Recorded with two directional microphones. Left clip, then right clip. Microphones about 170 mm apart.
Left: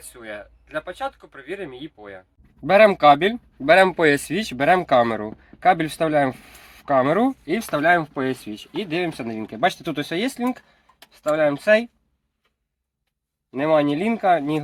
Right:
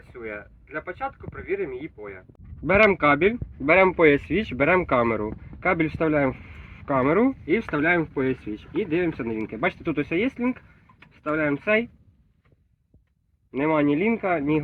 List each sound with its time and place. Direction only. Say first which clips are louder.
0.2 s speech: even; 45° left (ahead or behind)
13.5 s speech: left 3 dB; 50° left (ahead or behind)